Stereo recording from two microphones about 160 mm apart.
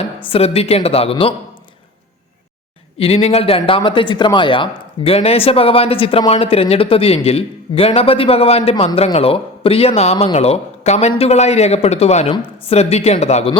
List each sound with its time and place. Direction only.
0.3 s speech: 40° left (ahead or behind)
3.0 s speech: 40° left (ahead or behind)